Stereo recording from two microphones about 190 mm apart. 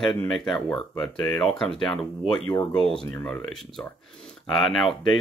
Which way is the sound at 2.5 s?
20° left (ahead or behind).